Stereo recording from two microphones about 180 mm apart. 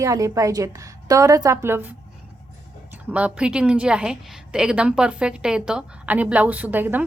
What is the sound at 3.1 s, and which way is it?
A woman's voice, 5° right (ahead or behind).